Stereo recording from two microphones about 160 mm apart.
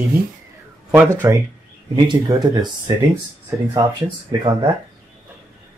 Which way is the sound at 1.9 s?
25° right (ahead or behind).